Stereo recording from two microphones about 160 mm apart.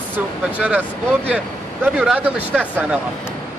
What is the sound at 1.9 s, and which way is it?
Speech, 10° right (ahead or behind).